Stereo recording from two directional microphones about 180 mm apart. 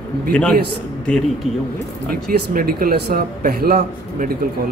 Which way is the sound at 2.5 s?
55° right (ahead or behind).